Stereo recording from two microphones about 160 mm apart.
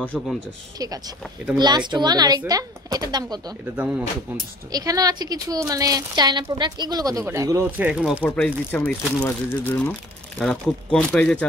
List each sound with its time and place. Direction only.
0.0 s speech: 10° left (ahead or behind)
0.7 s speech: 25° right (ahead or behind)
1.2 s speech: 5° right (ahead or behind)
1.6 s speech: 25° right (ahead or behind)
3.7 s speech: 10° right (ahead or behind)
4.7 s speech: 20° right (ahead or behind)
7.8 s speech: 5° right (ahead or behind)
8.2 s speech: 10° left (ahead or behind)